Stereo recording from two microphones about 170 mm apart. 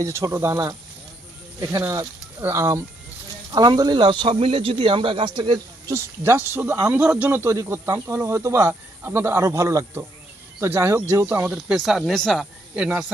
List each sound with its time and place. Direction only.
0.0 s speech: 15° right (ahead or behind); by 5.5 s 30° right (ahead or behind)
5.9 s speech: 15° right (ahead or behind)